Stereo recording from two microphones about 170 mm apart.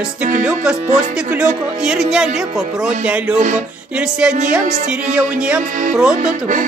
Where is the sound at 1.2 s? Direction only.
5° right (ahead or behind).